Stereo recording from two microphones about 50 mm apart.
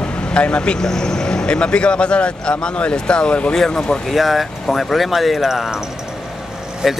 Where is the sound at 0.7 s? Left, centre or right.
Centre.